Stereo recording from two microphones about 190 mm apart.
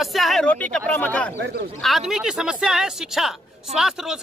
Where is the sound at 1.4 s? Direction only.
60° right (ahead or behind).